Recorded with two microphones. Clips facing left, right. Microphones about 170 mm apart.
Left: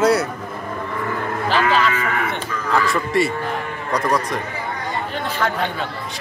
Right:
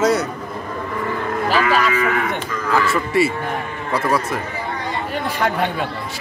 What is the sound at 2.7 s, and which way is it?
A man's voice, 5° right (ahead or behind).